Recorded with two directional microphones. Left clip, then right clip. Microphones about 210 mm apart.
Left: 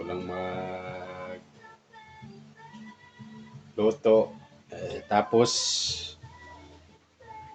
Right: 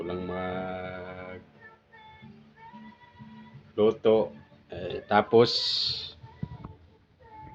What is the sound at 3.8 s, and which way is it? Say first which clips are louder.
Speech: left 1 dB; 35° right (ahead or behind).